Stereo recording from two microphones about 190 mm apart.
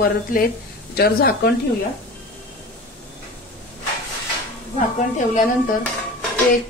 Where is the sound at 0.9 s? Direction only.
55° left (ahead or behind).